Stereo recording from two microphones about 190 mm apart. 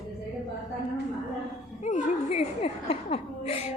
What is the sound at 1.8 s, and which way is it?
A woman's voice, 35° left (ahead or behind).